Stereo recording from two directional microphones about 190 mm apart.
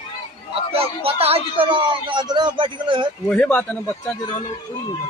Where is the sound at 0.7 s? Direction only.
30° right (ahead or behind).